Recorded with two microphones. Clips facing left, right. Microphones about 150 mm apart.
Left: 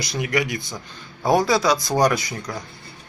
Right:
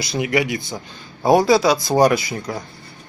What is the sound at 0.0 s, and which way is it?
A man's voice, 25° right (ahead or behind).